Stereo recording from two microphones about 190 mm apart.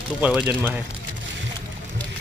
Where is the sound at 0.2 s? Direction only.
10° right (ahead or behind).